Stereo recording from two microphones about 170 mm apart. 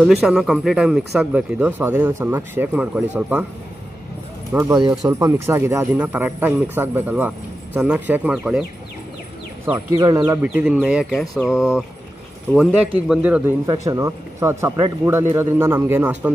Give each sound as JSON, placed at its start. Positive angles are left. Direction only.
{"t": 0.0, "sound": "speech", "side_deg": -5}
{"t": 4.5, "sound": "speech", "side_deg": -20}
{"t": 9.9, "sound": "speech", "side_deg": -25}
{"t": 10.4, "sound": "speech", "side_deg": -10}
{"t": 13.7, "sound": "speech", "side_deg": -20}